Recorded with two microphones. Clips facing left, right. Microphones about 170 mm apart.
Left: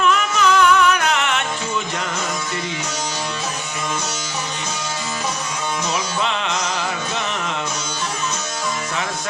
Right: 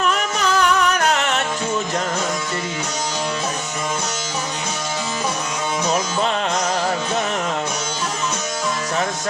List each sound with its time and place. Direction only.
0.0 s music: 40° right (ahead or behind)
5.9 s music: 40° right (ahead or behind)